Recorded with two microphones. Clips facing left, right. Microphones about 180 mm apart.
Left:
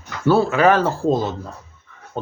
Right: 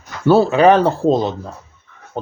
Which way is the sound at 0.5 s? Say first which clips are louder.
Right 4 dB; 20° right (ahead or behind).